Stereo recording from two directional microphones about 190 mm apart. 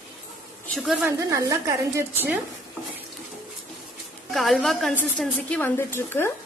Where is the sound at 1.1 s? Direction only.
15° right (ahead or behind).